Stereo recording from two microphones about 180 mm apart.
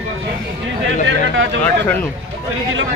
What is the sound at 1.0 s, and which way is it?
Speech, 90° right.